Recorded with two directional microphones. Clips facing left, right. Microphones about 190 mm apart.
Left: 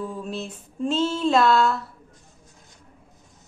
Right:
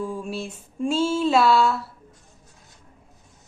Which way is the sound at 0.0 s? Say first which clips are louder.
Right 1 dB; 10° right (ahead or behind).